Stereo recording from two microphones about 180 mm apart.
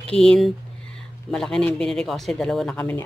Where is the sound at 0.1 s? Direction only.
5° left (ahead or behind).